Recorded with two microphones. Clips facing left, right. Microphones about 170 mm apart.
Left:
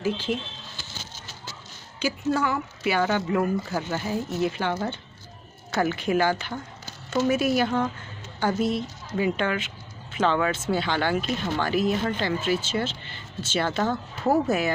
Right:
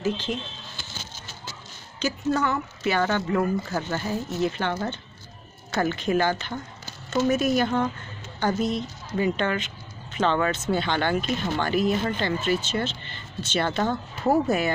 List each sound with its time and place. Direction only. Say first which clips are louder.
0.0 s speech: left 1 dB; 10° left (ahead or behind)
2.0 s speech: even; 10° left (ahead or behind)